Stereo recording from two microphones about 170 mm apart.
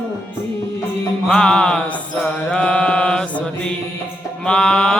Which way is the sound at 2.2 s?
5° left (ahead or behind).